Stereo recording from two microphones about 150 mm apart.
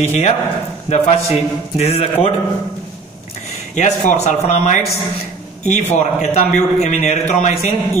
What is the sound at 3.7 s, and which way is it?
A man's voice, 50° left (ahead or behind).